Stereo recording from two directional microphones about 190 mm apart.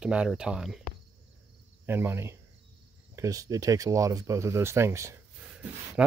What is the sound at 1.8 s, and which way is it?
Speech, 10° right (ahead or behind).